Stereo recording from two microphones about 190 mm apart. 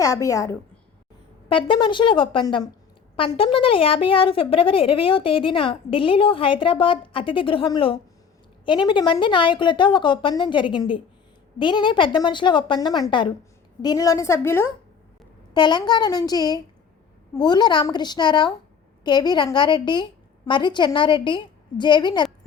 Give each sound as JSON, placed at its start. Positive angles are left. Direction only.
{"t": 0.0, "sound": "a woman's voice", "side_deg": 15}
{"t": 1.5, "sound": "a woman's voice", "side_deg": 25}
{"t": 15.5, "sound": "a woman's voice", "side_deg": 25}